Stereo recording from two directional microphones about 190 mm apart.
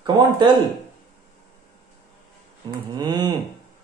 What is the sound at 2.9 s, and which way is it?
Speech, 20° right (ahead or behind).